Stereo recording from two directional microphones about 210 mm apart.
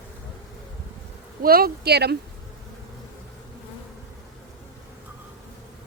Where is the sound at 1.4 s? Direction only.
45° right (ahead or behind).